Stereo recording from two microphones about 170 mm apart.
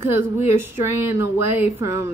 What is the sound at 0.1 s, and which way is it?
Speech, 15° right (ahead or behind).